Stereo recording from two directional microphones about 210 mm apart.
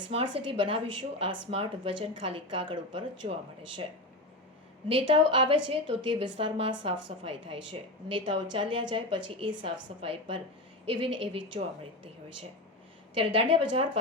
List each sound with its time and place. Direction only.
0.1 s a woman's voice: 25° right (ahead or behind)
4.9 s a woman's voice: 25° right (ahead or behind)
13.1 s a woman's voice: 25° right (ahead or behind)